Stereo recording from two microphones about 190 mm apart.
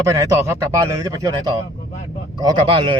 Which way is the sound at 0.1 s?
15° right (ahead or behind).